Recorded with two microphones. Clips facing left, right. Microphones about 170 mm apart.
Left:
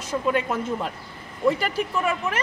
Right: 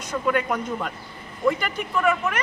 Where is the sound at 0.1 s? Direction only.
30° left (ahead or behind).